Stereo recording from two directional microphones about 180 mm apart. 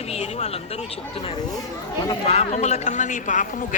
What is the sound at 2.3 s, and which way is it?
Speech, 35° left (ahead or behind).